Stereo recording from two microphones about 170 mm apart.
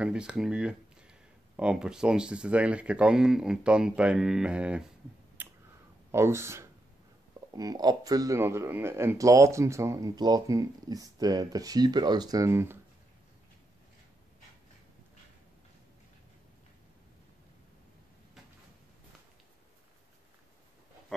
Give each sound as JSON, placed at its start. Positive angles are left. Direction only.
{"t": 0.0, "sound": "speech", "side_deg": -5}
{"t": 5.4, "sound": "a sound", "side_deg": -10}
{"t": 6.1, "sound": "speech", "side_deg": -15}